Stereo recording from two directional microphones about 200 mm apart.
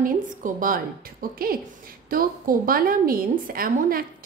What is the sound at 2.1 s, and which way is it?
A woman's voice, 45° right (ahead or behind).